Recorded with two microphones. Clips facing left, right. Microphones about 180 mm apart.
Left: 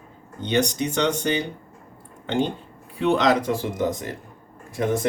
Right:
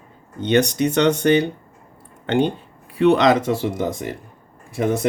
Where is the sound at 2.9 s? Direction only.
70° right (ahead or behind).